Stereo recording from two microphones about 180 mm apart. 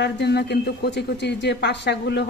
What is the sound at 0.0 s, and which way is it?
A man's voice, 65° left (ahead or behind).